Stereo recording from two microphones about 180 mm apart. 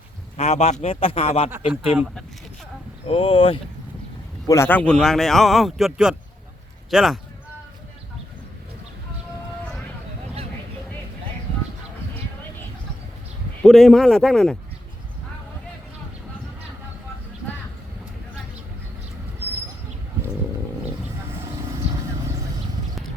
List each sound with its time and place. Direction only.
0.3 s a man's voice: 35° left (ahead or behind)
1.5 s speech: 10° right (ahead or behind)
3.1 s a man's voice: 30° left (ahead or behind)
4.4 s a man's voice: 15° left (ahead or behind); by 7.2 s centre (ahead or behind)
13.6 s a man's voice: 5° left (ahead or behind)